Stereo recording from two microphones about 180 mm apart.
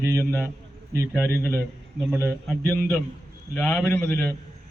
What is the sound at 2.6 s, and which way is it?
A man's voice, 10° left (ahead or behind).